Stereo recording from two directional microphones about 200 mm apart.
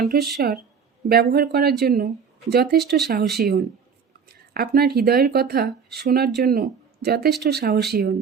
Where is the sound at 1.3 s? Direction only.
50° right (ahead or behind).